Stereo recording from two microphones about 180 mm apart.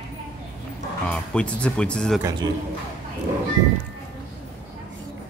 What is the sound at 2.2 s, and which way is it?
Speech, 20° right (ahead or behind).